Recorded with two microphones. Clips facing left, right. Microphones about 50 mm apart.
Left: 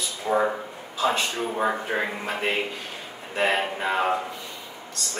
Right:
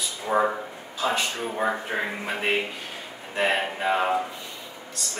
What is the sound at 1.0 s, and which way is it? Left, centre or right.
Speech, centre.